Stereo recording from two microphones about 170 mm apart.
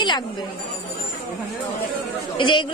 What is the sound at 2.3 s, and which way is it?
Speech, 25° left (ahead or behind).